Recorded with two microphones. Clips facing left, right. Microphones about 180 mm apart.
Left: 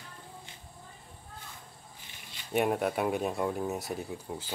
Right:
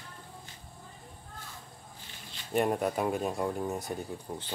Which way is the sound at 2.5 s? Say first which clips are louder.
Even; 5° left (ahead or behind).